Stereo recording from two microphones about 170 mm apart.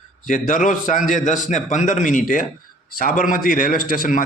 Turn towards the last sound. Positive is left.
turn(degrees=55)  # may be behind; listen again after turning